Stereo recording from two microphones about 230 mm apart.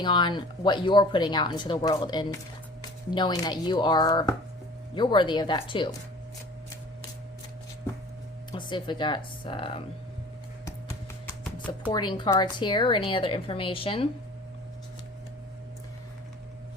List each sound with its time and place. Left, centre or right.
0.0 s speech: centre
8.5 s speech: centre
10.7 s music: centre
11.9 s speech: centre